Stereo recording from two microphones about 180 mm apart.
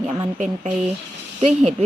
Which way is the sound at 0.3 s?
45° right (ahead or behind).